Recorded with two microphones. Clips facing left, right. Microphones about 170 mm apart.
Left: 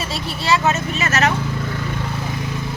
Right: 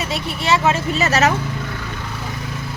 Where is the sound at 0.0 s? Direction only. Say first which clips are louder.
Right 2 dB; 20° right (ahead or behind).